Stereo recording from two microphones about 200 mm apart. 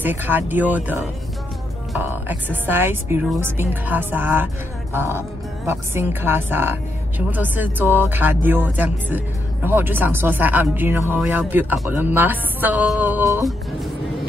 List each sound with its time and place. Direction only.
0.0 s a woman's voice: 10° right (ahead or behind)